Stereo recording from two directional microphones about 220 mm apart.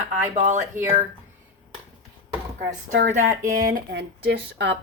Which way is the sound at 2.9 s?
35° right (ahead or behind).